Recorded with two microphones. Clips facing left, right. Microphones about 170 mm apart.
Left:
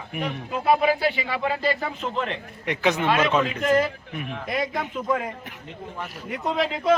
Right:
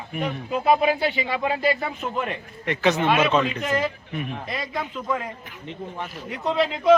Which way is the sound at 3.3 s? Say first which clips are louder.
Left 1 dB; 5° left (ahead or behind).